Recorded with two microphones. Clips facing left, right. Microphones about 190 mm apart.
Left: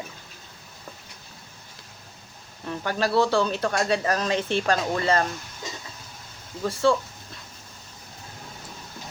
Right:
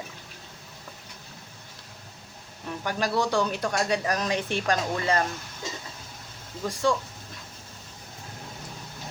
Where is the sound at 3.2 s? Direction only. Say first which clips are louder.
Left 4 dB; 15° right (ahead or behind).